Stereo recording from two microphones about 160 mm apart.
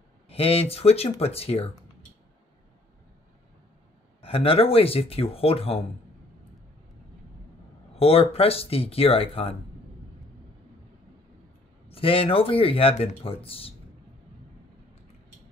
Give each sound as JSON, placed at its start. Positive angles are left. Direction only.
{"t": 0.3, "sound": "speech", "side_deg": 40}
{"t": 4.2, "sound": "speech", "side_deg": 35}
{"t": 7.9, "sound": "speech", "side_deg": 40}
{"t": 11.9, "sound": "speech", "side_deg": 35}